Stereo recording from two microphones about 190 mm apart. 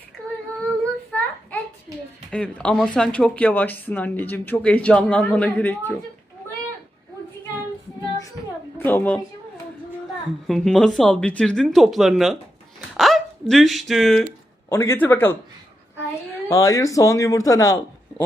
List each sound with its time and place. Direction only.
1.1 s a sound: 10° left (ahead or behind)
2.3 s speech: 5° left (ahead or behind)
8.8 s a woman's voice: 10° left (ahead or behind)
10.4 s speech: centre (ahead or behind)
14.7 s speech: 15° left (ahead or behind)
16.5 s speech: 15° left (ahead or behind)